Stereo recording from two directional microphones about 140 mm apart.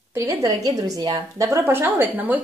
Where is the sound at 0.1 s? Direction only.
20° right (ahead or behind).